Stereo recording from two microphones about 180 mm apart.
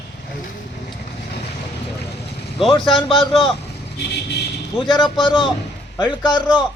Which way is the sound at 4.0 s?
65° left (ahead or behind).